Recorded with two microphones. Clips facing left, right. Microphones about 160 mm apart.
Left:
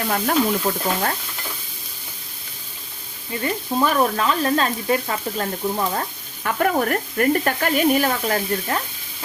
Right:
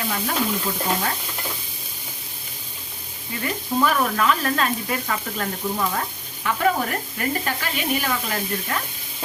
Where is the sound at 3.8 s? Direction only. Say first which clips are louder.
Left 1 dB; 30° left (ahead or behind).